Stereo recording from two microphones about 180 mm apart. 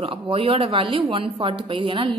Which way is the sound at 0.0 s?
30° right (ahead or behind).